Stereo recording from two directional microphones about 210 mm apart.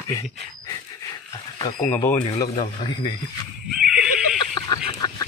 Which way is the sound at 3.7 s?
5° right (ahead or behind).